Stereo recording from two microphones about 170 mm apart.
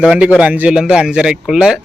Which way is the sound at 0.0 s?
5° right (ahead or behind).